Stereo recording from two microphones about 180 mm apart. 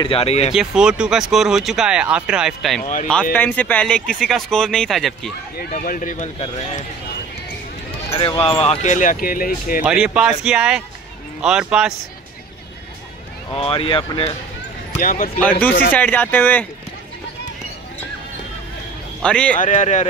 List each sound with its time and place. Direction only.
0.0 s speech: 30° left (ahead or behind)
0.6 s speech: 5° right (ahead or behind)
2.8 s speech: 45° left (ahead or behind)
3.3 s speech: 10° left (ahead or behind)
5.6 s speech: 50° left (ahead or behind)
8.2 s speech: 30° left (ahead or behind); by 9.8 s 50° left (ahead or behind)
9.8 s speech: 5° right (ahead or behind)
13.6 s speech: 30° left (ahead or behind)
15.0 s speech: 50° left (ahead or behind)
15.9 s speech: 10° left (ahead or behind)
19.2 s speech: 5° left (ahead or behind)
19.5 s speech: 45° left (ahead or behind)